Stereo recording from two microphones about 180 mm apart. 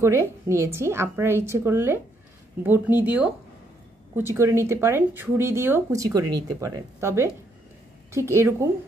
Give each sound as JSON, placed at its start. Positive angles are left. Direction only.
{"t": 0.0, "sound": "speech", "side_deg": -15}